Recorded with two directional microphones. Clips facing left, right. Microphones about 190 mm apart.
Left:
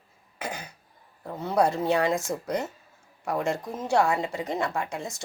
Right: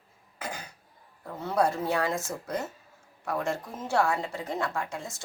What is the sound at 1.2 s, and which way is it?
Speech, 20° left (ahead or behind).